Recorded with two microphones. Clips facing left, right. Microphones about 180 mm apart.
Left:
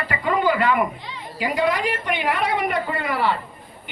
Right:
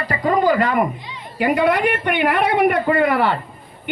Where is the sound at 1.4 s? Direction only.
60° right (ahead or behind).